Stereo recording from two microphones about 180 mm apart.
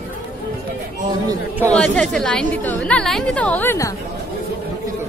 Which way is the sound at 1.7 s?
5° left (ahead or behind).